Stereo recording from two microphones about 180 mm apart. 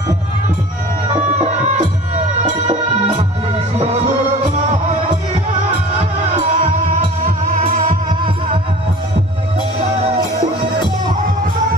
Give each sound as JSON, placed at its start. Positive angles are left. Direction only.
{"t": 1.1, "sound": "music", "side_deg": -35}
{"t": 6.3, "sound": "music", "side_deg": -30}
{"t": 7.6, "sound": "music", "side_deg": -40}